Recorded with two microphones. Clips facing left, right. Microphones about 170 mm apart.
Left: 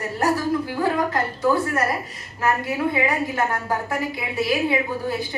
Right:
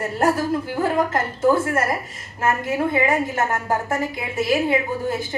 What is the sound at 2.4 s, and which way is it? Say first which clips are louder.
A woman's voice: right 1 dB; 45° right (ahead or behind).